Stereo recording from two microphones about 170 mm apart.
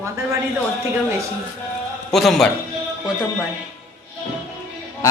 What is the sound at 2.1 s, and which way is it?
Speech, centre (ahead or behind).